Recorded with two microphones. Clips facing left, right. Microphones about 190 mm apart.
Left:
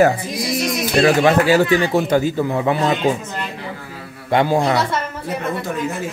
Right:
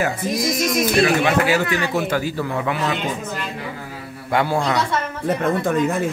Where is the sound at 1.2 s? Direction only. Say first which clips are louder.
Left 4 dB; 30° left (ahead or behind).